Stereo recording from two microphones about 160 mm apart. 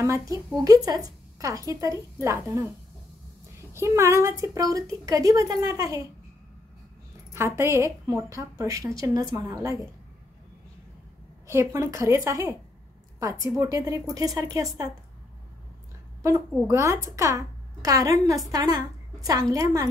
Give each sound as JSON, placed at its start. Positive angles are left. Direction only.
{"t": 0.7, "sound": "a woman's voice", "side_deg": -25}
{"t": 3.7, "sound": "a woman's voice", "side_deg": -15}
{"t": 7.3, "sound": "a woman's voice", "side_deg": -15}
{"t": 11.4, "sound": "a woman's voice", "side_deg": -15}
{"t": 16.2, "sound": "a woman's voice", "side_deg": -20}